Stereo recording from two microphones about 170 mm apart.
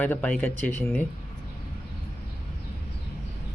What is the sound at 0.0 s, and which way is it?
Speech, 10° left (ahead or behind).